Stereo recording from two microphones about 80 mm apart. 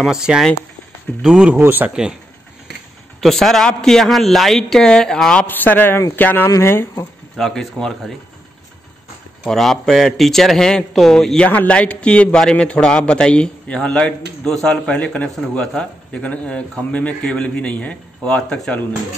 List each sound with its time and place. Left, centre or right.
0.0 s speech: centre
1.6 s speech: right
3.2 s speech: centre
5.5 s speech: left
7.3 s speech: centre
9.4 s speech: centre
11.4 s a man's voice: centre